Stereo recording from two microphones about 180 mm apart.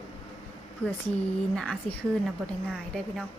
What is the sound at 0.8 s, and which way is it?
Speech, 35° left (ahead or behind).